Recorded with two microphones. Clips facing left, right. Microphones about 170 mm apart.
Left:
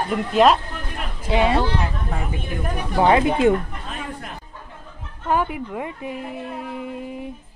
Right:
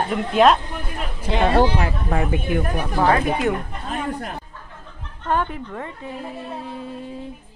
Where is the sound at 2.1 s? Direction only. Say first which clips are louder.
Right 7 dB; 65° right (ahead or behind).